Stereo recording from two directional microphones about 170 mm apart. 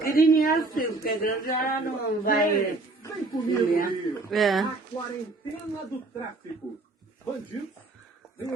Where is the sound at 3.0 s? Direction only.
20° left (ahead or behind).